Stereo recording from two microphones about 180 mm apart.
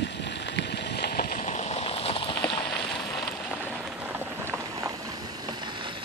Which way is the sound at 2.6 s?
5° left (ahead or behind).